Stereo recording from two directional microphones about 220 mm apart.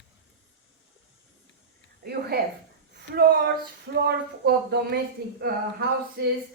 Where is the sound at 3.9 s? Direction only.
45° right (ahead or behind).